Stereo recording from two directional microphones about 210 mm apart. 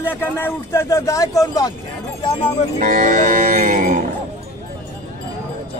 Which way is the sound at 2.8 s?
40° right (ahead or behind).